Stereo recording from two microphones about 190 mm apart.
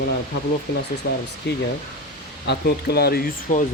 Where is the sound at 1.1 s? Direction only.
60° left (ahead or behind).